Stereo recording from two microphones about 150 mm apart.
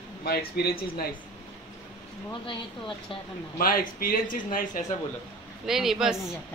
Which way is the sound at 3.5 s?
70° left (ahead or behind).